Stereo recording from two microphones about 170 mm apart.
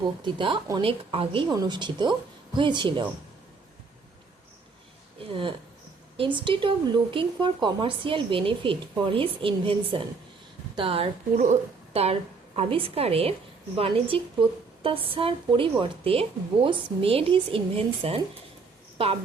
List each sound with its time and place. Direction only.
0.0 s speech: 30° right (ahead or behind)
5.3 s a woman's voice: 30° right (ahead or behind)